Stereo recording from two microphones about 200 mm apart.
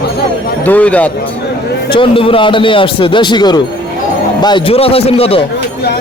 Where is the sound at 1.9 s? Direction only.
25° left (ahead or behind).